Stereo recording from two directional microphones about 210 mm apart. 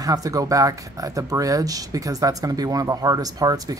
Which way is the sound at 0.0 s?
15° right (ahead or behind).